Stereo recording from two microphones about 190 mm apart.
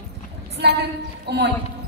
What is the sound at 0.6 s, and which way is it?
Speech, 60° right (ahead or behind).